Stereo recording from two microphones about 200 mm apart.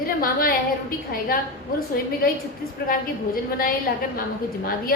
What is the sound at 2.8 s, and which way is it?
Speech, 50° left (ahead or behind).